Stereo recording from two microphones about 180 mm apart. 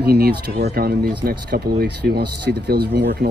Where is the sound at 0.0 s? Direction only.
60° right (ahead or behind).